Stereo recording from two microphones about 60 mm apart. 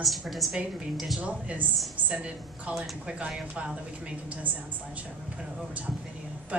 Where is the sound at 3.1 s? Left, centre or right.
Centre.